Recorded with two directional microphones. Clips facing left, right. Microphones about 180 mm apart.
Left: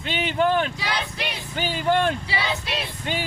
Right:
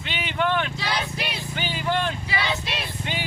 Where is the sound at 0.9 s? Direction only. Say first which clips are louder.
Even; 10° right (ahead or behind).